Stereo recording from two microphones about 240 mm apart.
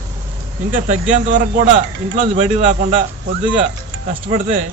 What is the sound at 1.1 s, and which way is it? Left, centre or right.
Speech, right.